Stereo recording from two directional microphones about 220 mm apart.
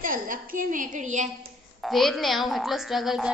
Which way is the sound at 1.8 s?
Centre (ahead or behind).